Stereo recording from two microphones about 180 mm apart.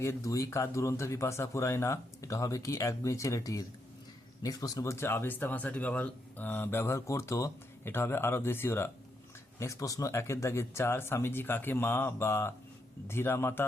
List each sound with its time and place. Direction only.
0.0 s speech: 15° left (ahead or behind)